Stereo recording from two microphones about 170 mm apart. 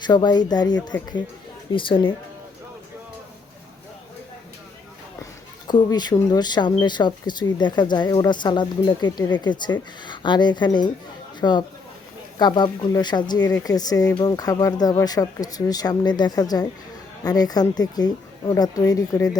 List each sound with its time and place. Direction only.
0.0 s speech: 25° left (ahead or behind)
5.2 s speech: 25° left (ahead or behind)